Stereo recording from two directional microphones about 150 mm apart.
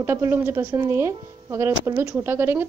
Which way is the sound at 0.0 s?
15° right (ahead or behind).